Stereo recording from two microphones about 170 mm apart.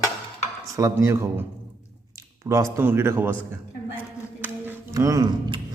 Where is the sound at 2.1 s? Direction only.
15° right (ahead or behind).